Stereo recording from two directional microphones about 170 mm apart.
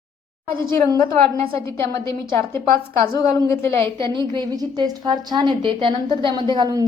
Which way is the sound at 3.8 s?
30° right (ahead or behind).